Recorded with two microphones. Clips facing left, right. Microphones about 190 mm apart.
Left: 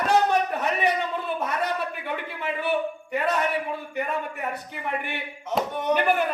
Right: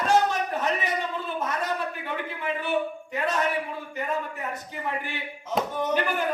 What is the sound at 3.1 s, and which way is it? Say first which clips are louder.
Speech: left 3 dB; 60° left (ahead or behind).